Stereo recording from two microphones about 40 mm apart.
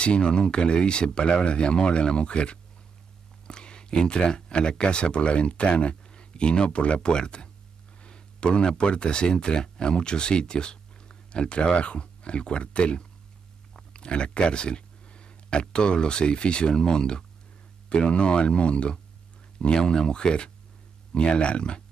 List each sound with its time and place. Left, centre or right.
0.0 s speech: left